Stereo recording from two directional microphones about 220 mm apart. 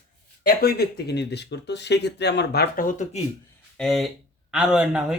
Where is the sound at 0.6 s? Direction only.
45° left (ahead or behind).